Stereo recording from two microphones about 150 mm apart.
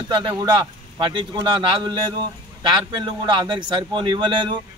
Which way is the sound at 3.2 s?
30° right (ahead or behind).